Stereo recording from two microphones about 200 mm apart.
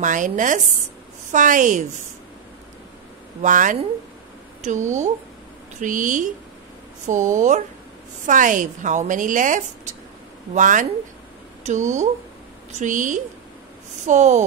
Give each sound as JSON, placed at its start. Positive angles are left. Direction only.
{"t": 0.0, "sound": "speech", "side_deg": -40}
{"t": 3.4, "sound": "speech", "side_deg": -40}